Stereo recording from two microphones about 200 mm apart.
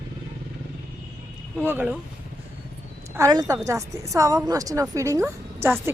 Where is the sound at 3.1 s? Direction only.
20° right (ahead or behind).